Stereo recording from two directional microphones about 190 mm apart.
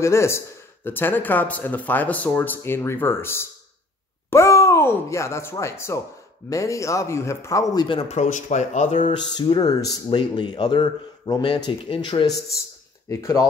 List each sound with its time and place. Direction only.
0.0 s a man's voice: 15° left (ahead or behind); by 9.1 s 40° left (ahead or behind)
9.1 s a man's voice: 20° left (ahead or behind)